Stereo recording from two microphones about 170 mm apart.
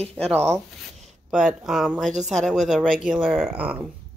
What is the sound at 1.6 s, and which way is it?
Speech, centre (ahead or behind).